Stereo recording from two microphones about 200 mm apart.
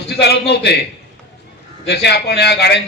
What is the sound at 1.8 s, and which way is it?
Speech, 55° left (ahead or behind).